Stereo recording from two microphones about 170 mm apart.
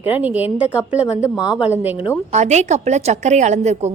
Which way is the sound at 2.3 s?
40° right (ahead or behind).